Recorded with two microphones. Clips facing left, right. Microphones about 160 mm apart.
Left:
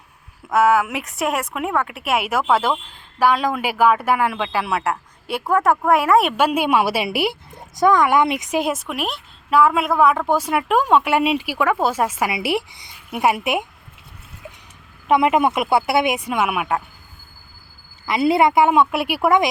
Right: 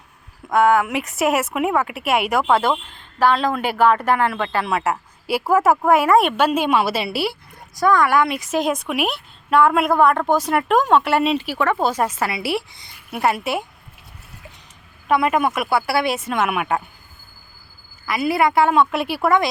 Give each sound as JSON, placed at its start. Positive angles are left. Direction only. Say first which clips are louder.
{"t": 0.5, "sound": "a woman's voice", "louder": "right 1 dB", "side_deg": 5}
{"t": 15.0, "sound": "speech", "louder": "left 2 dB", "side_deg": 20}
{"t": 18.0, "sound": "speech", "louder": "left 3 dB", "side_deg": 25}